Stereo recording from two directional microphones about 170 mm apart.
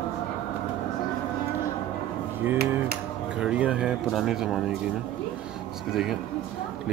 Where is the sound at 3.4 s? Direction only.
5° right (ahead or behind).